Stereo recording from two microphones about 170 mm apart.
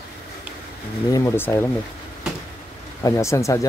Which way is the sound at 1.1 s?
20° left (ahead or behind).